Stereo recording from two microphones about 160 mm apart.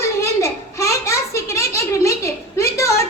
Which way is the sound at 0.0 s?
20° left (ahead or behind).